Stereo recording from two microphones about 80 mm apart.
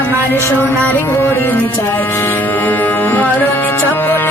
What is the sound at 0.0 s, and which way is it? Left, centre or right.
Music, left.